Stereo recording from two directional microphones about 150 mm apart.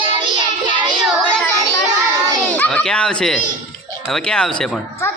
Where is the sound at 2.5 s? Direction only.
10° left (ahead or behind).